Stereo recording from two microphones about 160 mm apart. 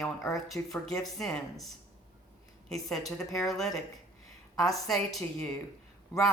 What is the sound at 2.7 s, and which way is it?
Speech, centre (ahead or behind).